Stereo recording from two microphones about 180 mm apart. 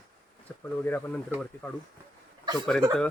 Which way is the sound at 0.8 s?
10° left (ahead or behind).